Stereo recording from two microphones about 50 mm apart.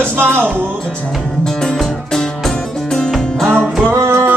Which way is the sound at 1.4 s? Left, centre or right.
Centre.